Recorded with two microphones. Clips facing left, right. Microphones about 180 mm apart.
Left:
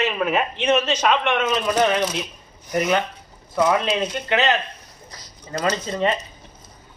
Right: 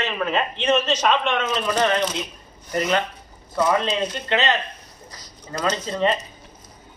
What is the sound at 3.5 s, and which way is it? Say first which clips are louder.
A man's voice: left 1 dB; 10° left (ahead or behind).